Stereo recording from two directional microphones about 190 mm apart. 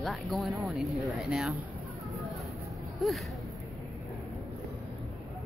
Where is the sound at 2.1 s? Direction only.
Centre (ahead or behind).